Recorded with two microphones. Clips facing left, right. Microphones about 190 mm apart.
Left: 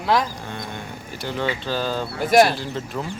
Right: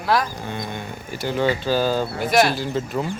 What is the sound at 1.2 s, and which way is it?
Speech, 5° right (ahead or behind).